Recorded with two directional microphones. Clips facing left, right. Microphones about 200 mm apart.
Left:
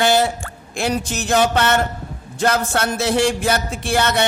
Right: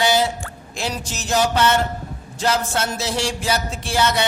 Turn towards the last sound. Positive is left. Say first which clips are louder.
# left 2 dB
turn(degrees=55)  # may be behind; listen again after turning